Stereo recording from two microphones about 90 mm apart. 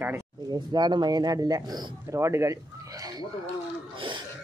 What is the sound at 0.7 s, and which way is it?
Speech, 55° right (ahead or behind).